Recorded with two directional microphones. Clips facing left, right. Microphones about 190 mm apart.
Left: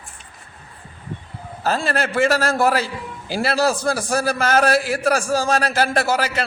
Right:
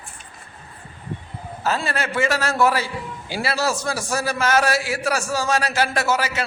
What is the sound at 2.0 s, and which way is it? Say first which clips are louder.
A man's voice: left 4 dB; 50° left (ahead or behind).